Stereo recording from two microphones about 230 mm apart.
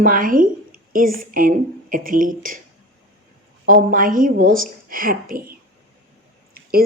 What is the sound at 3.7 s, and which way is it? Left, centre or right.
A woman's voice, right.